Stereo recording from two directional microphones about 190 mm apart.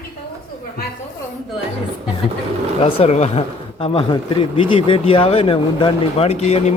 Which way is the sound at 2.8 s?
30° left (ahead or behind).